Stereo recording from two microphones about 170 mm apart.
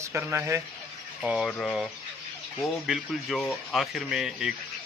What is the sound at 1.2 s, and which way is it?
A man's voice, 5° right (ahead or behind).